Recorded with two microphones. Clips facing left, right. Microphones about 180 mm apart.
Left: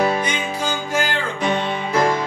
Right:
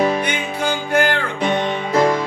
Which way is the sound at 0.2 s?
60° right (ahead or behind).